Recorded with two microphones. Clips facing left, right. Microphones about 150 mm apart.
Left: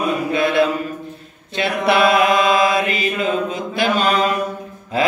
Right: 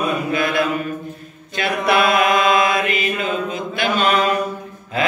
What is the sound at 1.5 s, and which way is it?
Mantra, 30° left (ahead or behind).